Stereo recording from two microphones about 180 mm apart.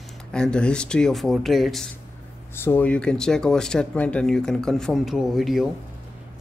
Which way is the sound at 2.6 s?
10° left (ahead or behind).